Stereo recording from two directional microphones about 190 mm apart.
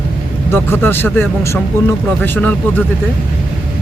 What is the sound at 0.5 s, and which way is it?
Speech, 10° left (ahead or behind).